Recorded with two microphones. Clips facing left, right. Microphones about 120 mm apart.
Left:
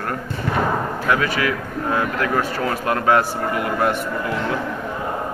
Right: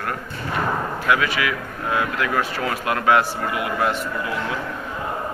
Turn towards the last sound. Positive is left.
turn(degrees=45)  # may be behind; listen again after turning